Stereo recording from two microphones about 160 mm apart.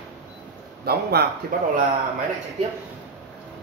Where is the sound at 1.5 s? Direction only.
60° right (ahead or behind).